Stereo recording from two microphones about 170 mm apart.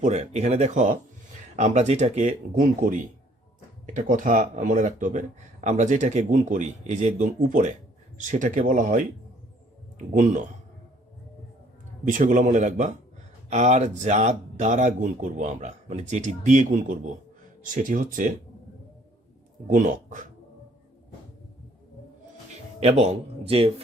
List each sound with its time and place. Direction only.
0.0 s a man's voice: 40° right (ahead or behind)
10.2 s speech: 50° right (ahead or behind)
12.0 s speech: 50° right (ahead or behind)
19.6 s speech: 50° right (ahead or behind)
22.8 s a man's voice: 40° right (ahead or behind)